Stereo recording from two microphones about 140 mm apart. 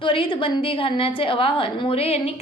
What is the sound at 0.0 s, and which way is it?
A woman's voice, 40° left (ahead or behind).